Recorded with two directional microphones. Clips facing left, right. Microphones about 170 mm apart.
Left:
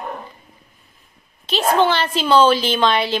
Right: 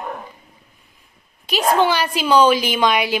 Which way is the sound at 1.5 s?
10° right (ahead or behind).